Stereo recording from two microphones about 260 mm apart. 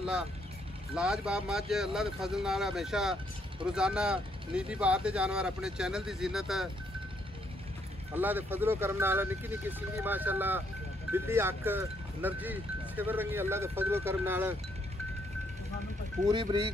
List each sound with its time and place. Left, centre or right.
0.9 s speech: centre
8.1 s speech: centre
16.3 s speech: centre